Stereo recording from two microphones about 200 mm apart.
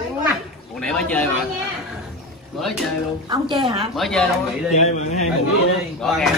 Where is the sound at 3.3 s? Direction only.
25° right (ahead or behind).